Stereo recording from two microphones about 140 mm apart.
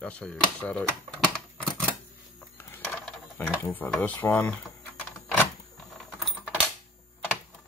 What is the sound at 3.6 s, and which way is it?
Speech, 15° left (ahead or behind).